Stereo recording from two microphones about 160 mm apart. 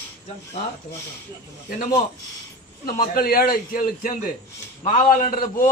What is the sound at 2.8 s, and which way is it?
A man's voice, 65° left (ahead or behind).